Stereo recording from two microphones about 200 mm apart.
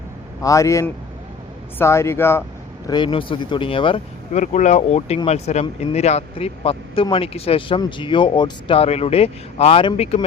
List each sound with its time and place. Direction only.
0.4 s speech: 15° left (ahead or behind)
2.8 s speech: 20° left (ahead or behind)
4.4 s speech: 35° left (ahead or behind)